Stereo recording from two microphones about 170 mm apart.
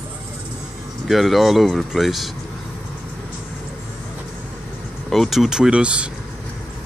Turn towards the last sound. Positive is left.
turn(degrees=-5)  # may be behind; listen again after turning